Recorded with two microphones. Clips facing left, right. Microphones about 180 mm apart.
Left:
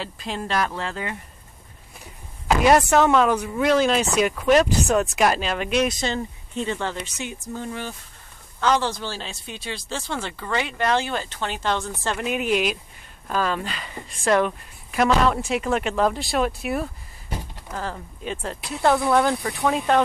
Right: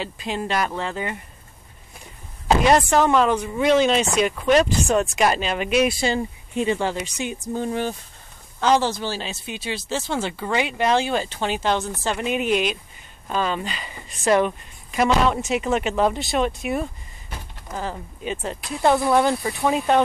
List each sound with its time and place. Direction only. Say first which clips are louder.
0.0 s speech: right 3 dB; centre (ahead or behind)
2.6 s speech: left 2 dB; 5° left (ahead or behind); by 7.9 s 20° right (ahead or behind)
8.7 s speech: right 3 dB; 5° right (ahead or behind)
10.1 s speech: right 3 dB; 25° right (ahead or behind)
12.0 s speech: right 2 dB; centre (ahead or behind)